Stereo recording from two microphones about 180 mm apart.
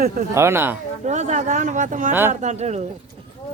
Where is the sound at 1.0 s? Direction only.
40° right (ahead or behind).